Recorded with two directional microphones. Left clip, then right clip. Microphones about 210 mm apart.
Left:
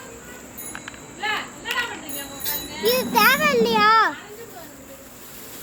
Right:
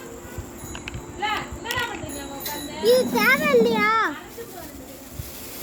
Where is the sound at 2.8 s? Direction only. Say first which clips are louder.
Even; 35° left (ahead or behind).